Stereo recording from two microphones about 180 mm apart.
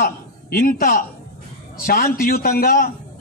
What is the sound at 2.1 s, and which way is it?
Speech, 55° left (ahead or behind).